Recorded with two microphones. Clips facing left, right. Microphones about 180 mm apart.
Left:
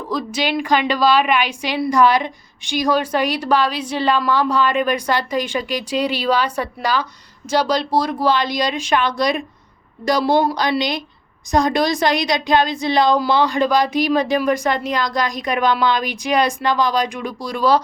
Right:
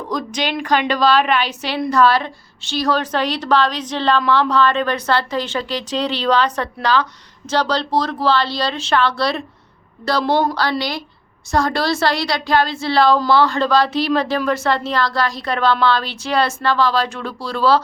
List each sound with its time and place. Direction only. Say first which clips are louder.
0.1 s a woman's voice: left 2 dB; 5° left (ahead or behind)